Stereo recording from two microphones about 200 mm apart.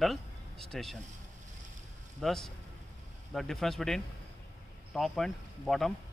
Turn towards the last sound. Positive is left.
turn(degrees=0)  # may be behind; listen again after turning